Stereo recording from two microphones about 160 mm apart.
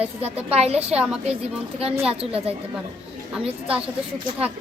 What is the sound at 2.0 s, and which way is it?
Speech, 35° right (ahead or behind).